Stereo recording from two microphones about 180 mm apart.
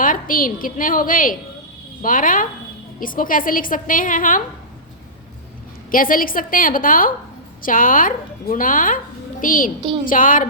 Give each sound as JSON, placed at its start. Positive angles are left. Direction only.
{"t": 0.0, "sound": "a woman's voice", "side_deg": 50}
{"t": 5.9, "sound": "a woman's voice", "side_deg": 50}